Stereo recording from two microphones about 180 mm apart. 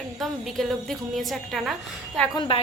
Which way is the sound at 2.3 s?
25° left (ahead or behind).